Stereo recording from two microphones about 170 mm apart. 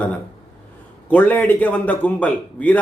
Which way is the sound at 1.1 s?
10° left (ahead or behind).